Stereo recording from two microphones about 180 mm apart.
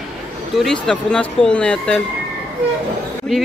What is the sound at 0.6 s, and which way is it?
Speech, 5° left (ahead or behind).